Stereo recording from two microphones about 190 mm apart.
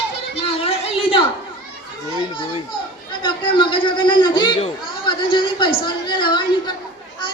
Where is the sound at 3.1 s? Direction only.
25° left (ahead or behind).